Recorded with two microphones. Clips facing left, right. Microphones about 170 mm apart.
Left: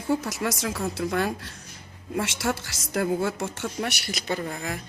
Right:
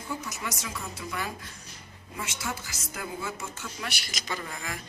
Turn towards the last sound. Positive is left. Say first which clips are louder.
# left 7 dB
turn(degrees=40)  # may be behind; listen again after turning